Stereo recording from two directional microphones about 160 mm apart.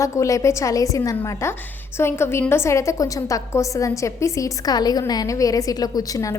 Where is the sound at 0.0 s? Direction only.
20° left (ahead or behind).